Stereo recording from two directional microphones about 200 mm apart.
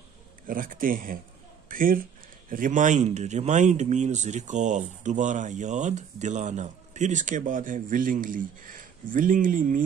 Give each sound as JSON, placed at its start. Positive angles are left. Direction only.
{"t": 0.5, "sound": "a man's voice", "side_deg": -45}